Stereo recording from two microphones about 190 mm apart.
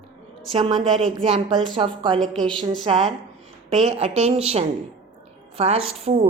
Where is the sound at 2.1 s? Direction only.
Centre (ahead or behind).